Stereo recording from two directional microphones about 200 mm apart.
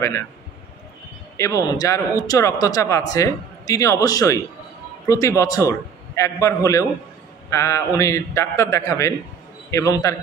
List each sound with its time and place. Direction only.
1.3 s speech: 15° left (ahead or behind)